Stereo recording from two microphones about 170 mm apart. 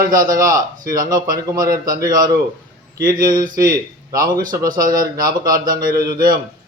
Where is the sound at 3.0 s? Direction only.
60° right (ahead or behind).